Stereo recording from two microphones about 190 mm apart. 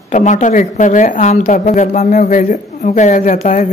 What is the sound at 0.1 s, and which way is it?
A woman's voice, 40° left (ahead or behind).